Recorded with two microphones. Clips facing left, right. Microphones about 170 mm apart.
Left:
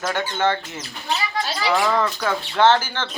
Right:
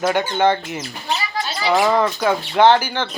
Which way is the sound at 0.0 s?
15° right (ahead or behind).